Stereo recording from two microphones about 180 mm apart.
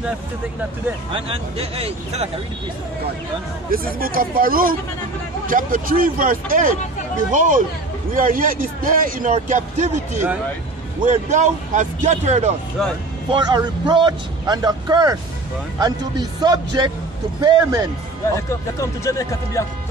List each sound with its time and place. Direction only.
1.1 s speech: 30° right (ahead or behind)
3.7 s a man's voice: 55° right (ahead or behind); by 12.5 s 40° right (ahead or behind)
13.3 s a man's voice: 25° right (ahead or behind)
18.3 s speech: 15° left (ahead or behind)